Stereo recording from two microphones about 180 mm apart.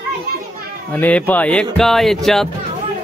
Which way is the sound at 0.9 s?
10° left (ahead or behind).